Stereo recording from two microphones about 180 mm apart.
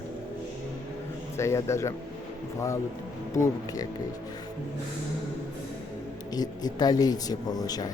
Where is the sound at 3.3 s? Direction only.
15° left (ahead or behind).